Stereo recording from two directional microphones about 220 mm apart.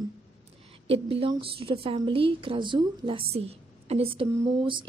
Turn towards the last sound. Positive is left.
turn(degrees=-25)  # may be behind; listen again after turning